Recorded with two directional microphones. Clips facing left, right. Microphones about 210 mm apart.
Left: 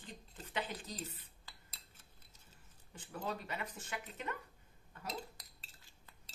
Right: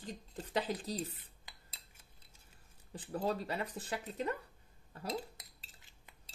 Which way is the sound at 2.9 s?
35° right (ahead or behind).